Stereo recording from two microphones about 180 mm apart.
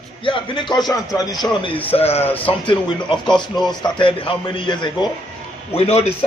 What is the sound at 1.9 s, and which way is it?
Music, 35° left (ahead or behind).